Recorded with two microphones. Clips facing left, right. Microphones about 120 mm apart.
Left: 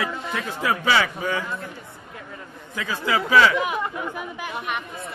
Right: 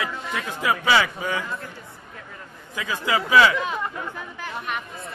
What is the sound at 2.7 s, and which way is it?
Speech, 15° right (ahead or behind).